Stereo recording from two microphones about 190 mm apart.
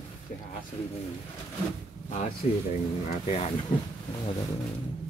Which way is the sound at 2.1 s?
40° left (ahead or behind).